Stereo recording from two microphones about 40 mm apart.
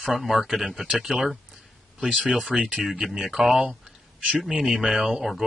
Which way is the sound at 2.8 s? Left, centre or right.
Centre.